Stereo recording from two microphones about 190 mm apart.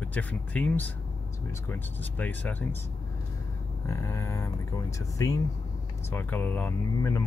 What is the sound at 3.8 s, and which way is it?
Speech, 15° left (ahead or behind).